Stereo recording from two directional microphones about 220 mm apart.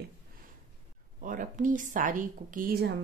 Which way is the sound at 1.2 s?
35° right (ahead or behind).